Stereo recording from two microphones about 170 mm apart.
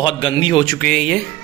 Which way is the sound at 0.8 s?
Centre (ahead or behind).